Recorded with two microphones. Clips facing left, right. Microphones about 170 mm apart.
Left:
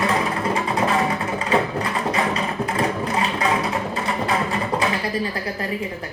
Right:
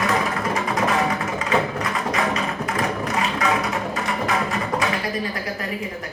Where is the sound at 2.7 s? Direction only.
30° left (ahead or behind).